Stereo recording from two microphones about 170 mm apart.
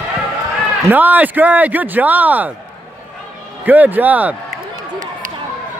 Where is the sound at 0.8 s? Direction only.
10° right (ahead or behind).